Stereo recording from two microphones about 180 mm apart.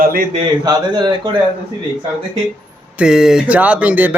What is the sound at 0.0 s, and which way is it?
Speech, 50° right (ahead or behind).